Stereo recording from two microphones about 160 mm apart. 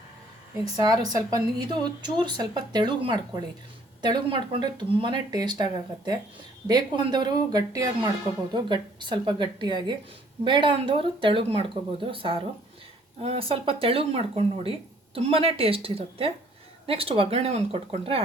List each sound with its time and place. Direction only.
0.8 s a woman's voice: 25° right (ahead or behind)